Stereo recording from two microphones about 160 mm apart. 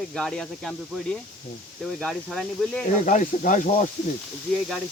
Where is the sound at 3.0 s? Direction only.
50° left (ahead or behind).